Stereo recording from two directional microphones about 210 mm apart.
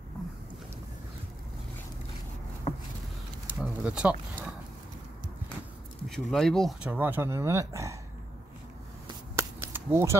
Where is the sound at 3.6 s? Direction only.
5° right (ahead or behind).